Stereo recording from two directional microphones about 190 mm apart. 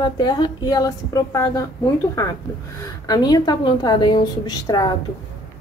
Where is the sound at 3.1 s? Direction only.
20° left (ahead or behind).